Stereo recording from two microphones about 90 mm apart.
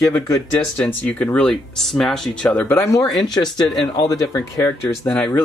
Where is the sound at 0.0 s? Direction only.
40° left (ahead or behind).